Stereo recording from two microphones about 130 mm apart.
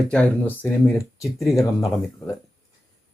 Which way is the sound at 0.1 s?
10° left (ahead or behind).